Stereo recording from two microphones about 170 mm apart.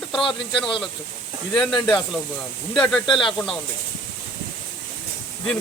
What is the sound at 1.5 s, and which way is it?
Speech, centre (ahead or behind).